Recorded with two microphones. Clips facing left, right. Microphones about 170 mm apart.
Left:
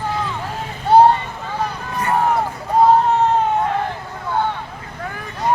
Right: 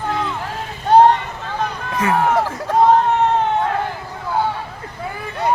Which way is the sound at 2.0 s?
90° right.